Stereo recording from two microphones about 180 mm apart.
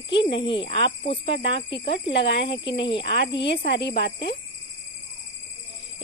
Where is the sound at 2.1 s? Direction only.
70° left (ahead or behind).